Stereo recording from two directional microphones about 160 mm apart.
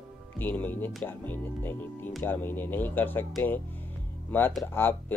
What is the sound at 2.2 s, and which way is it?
Speech, 15° left (ahead or behind).